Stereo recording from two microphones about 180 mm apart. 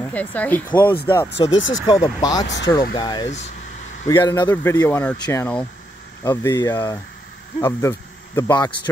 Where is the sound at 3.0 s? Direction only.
25° left (ahead or behind).